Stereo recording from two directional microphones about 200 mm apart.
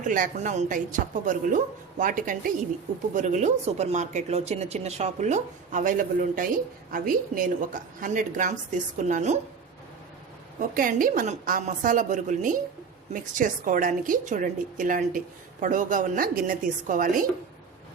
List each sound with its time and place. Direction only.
0.0 s speech: 40° right (ahead or behind)
10.8 s a woman's voice: 45° right (ahead or behind)